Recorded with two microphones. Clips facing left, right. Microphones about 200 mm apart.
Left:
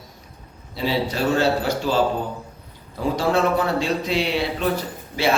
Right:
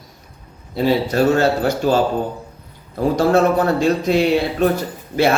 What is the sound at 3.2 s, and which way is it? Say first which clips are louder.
A man's voice: right 5 dB; 45° right (ahead or behind).